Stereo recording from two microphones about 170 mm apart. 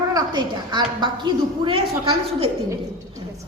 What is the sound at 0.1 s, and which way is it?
A woman's voice, 25° right (ahead or behind).